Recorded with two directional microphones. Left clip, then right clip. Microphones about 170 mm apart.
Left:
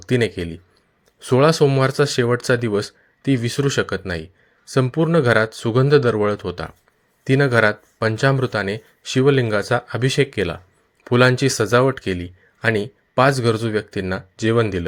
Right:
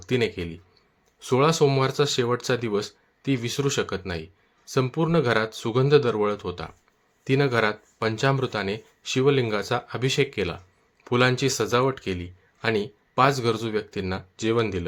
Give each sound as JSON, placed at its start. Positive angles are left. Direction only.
{"t": 0.0, "sound": "a man's voice", "side_deg": 30}